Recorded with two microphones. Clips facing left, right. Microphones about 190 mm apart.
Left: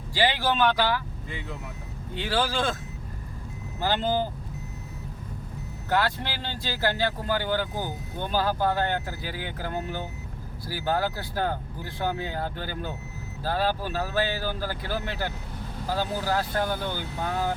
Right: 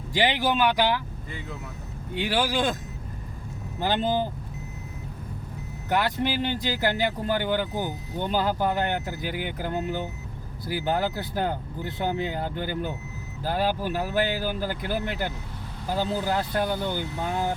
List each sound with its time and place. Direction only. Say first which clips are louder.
0.1 s speech: right 1 dB; 20° right (ahead or behind)
2.1 s speech: right 2 dB; 15° right (ahead or behind)
3.8 s speech: right 1 dB; 20° right (ahead or behind)
5.9 s speech: right 2 dB; 20° right (ahead or behind)